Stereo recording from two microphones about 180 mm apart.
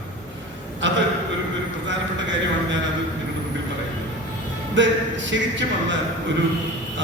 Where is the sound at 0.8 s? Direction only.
90° right.